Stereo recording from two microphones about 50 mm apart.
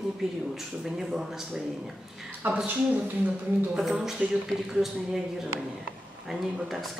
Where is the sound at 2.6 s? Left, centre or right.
Right.